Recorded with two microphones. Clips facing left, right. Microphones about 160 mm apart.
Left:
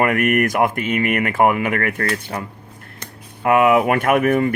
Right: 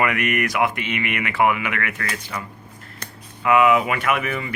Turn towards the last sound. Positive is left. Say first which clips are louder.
# left 8 dB
turn(degrees=50)  # may be behind; listen again after turning